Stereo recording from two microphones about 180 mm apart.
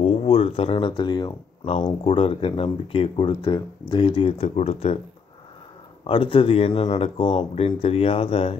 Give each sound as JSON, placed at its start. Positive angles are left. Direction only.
{"t": 0.0, "sound": "speech", "side_deg": 35}
{"t": 6.0, "sound": "speech", "side_deg": 30}